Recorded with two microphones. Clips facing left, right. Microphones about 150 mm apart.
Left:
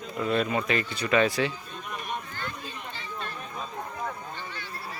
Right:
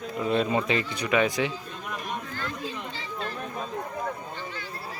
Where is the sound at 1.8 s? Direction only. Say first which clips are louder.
Right 1 dB; 90° right.